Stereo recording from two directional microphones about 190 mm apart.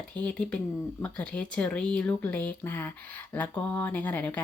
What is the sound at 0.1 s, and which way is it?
Speech, 5° left (ahead or behind).